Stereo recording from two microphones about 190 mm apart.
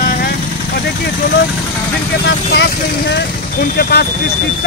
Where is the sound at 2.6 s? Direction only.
65° left (ahead or behind).